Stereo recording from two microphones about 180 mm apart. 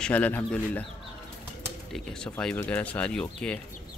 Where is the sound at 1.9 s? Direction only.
5° left (ahead or behind).